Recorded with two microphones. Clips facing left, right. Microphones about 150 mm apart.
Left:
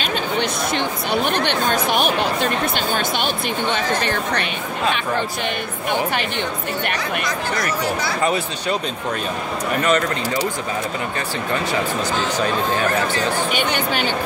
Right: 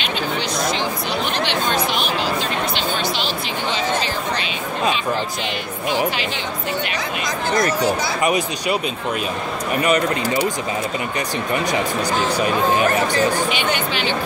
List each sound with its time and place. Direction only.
0.0 s a sound: 55° left (ahead or behind)
3.7 s chatter: 60° left (ahead or behind)
7.6 s speech: 15° right (ahead or behind)
9.8 s speech: 10° right (ahead or behind)
13.5 s speech: 45° left (ahead or behind)